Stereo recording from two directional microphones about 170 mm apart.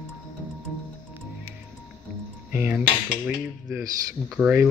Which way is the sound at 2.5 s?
10° right (ahead or behind).